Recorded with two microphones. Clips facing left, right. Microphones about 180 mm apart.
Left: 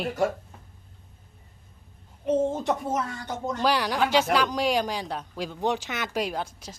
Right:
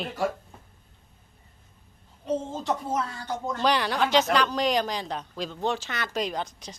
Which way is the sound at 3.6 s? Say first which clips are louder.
Even; 10° left (ahead or behind).